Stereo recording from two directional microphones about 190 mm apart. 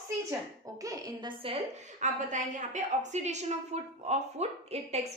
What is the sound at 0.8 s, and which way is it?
Speech, 20° right (ahead or behind).